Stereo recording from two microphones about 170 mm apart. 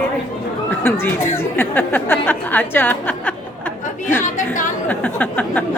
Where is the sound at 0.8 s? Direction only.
15° left (ahead or behind).